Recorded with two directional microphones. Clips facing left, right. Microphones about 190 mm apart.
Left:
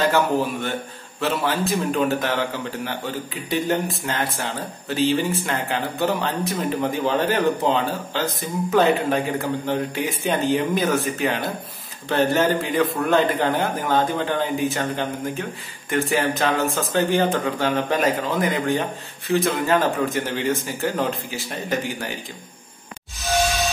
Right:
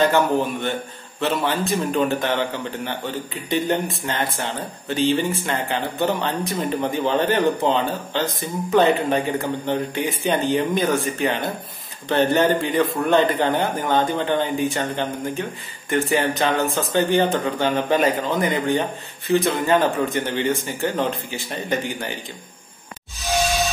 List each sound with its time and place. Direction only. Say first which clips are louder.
0.0 s speech: right 2 dB; centre (ahead or behind)